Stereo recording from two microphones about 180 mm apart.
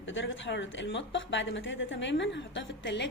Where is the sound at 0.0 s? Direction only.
90° left.